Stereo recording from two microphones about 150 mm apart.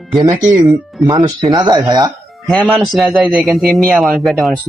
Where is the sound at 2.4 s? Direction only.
5° left (ahead or behind).